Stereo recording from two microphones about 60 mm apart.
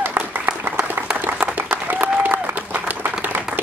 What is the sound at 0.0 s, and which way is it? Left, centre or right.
Applause, right.